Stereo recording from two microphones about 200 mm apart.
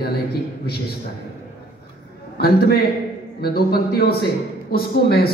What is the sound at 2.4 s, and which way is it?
A man's voice, 50° left (ahead or behind).